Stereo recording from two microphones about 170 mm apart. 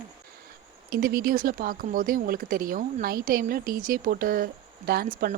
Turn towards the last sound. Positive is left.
turn(degrees=-55)  # may be behind; listen again after turning